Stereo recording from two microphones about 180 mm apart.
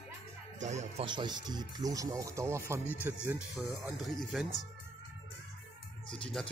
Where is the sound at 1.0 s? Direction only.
25° right (ahead or behind); by 4.6 s centre (ahead or behind).